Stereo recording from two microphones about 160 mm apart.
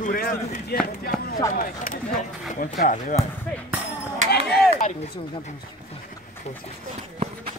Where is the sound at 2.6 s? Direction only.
55° left (ahead or behind).